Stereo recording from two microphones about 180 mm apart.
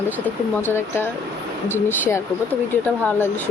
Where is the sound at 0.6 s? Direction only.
10° left (ahead or behind).